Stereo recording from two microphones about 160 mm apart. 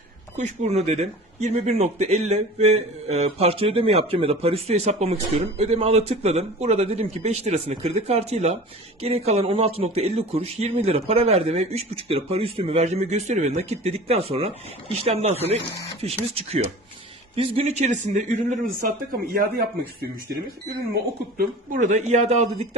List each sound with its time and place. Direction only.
0.3 s speech: 50° right (ahead or behind); by 19.6 s 65° right (ahead or behind)
21.3 s speech: 60° right (ahead or behind)